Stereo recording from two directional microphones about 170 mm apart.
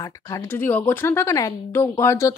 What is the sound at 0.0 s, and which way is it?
Speech, 15° left (ahead or behind).